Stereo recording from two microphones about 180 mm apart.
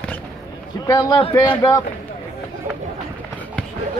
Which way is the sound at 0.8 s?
20° left (ahead or behind).